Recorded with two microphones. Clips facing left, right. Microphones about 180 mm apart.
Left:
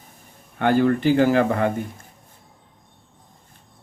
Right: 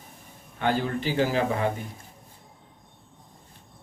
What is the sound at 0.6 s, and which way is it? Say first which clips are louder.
Speech: left 8 dB; 55° left (ahead or behind).